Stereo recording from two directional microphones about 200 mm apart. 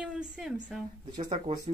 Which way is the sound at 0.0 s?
5° right (ahead or behind).